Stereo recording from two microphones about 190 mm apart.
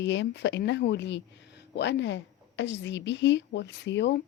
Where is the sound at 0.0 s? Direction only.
70° left (ahead or behind).